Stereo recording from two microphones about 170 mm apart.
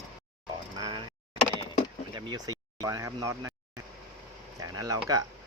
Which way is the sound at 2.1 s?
25° right (ahead or behind).